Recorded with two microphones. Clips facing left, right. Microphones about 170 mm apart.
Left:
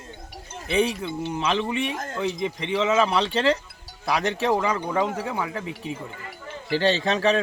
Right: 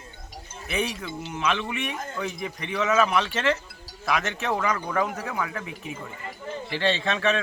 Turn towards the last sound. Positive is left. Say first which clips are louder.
# left 3 dB
turn(degrees=35)  # may be behind; listen again after turning